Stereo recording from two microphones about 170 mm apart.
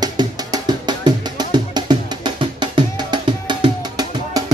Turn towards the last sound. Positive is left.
turn(degrees=-25)  # may be behind; listen again after turning